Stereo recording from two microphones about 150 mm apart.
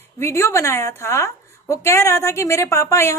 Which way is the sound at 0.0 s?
15° left (ahead or behind).